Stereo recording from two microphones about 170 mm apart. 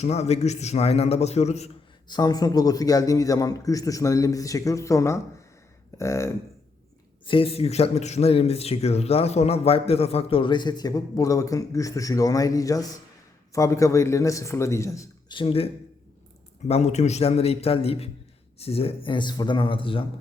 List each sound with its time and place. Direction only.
0.0 s a man's voice: 40° left (ahead or behind)
2.0 s a man's voice: 25° left (ahead or behind)
7.3 s a man's voice: 35° left (ahead or behind)
15.4 s a man's voice: 35° left (ahead or behind)